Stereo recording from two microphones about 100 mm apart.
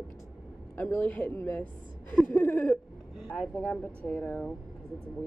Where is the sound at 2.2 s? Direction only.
15° left (ahead or behind).